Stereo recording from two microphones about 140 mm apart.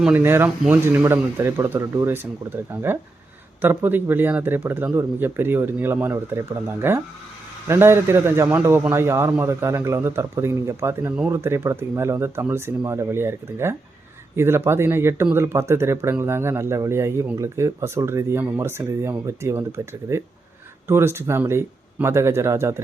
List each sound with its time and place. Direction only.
0.0 s speech: 15° right (ahead or behind)
3.6 s speech: 15° right (ahead or behind)